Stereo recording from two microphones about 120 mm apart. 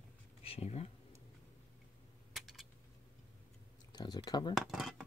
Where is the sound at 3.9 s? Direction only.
35° left (ahead or behind).